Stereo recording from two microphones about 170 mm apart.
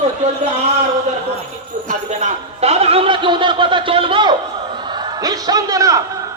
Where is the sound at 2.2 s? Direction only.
40° right (ahead or behind); by 6.0 s 20° right (ahead or behind).